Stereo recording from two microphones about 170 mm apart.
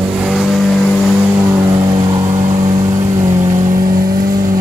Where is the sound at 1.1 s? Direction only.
15° right (ahead or behind).